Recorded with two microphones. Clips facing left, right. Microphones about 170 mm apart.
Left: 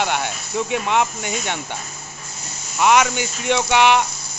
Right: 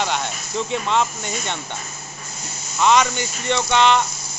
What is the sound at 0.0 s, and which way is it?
Speech, 10° left (ahead or behind).